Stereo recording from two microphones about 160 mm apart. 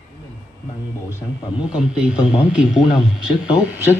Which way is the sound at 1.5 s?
5° right (ahead or behind).